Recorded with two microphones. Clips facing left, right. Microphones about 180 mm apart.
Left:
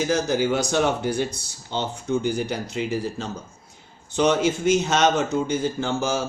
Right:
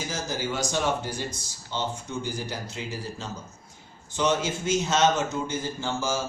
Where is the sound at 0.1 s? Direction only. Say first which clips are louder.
Left 8 dB; 65° left (ahead or behind).